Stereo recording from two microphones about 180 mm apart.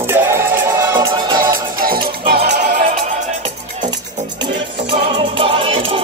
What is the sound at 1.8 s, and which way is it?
Music, 55° right (ahead or behind).